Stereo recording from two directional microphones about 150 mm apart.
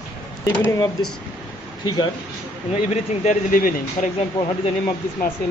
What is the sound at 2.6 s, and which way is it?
Speech, 45° left (ahead or behind).